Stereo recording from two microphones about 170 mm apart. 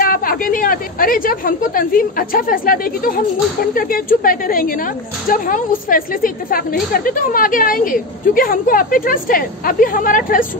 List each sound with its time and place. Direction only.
0.0 s a woman's voice: 55° left (ahead or behind)